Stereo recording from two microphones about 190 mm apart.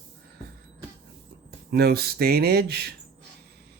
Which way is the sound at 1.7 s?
55° right (ahead or behind).